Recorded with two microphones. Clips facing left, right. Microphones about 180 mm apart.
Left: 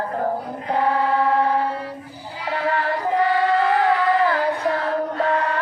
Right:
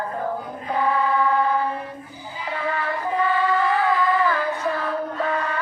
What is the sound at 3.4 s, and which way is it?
Child singing, 70° left (ahead or behind).